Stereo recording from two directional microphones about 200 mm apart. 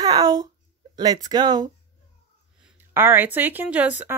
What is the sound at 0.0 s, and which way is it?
Speech, 20° right (ahead or behind).